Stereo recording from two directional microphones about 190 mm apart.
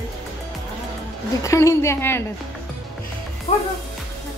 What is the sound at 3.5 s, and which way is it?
Speech, 40° left (ahead or behind).